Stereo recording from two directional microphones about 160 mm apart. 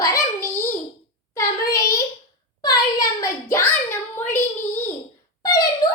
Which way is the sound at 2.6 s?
25° left (ahead or behind).